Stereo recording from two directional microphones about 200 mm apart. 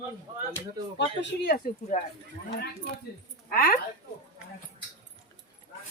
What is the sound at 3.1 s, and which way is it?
Speech, 50° left (ahead or behind).